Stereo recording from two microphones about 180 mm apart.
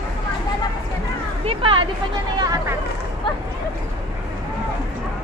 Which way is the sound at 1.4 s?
30° right (ahead or behind).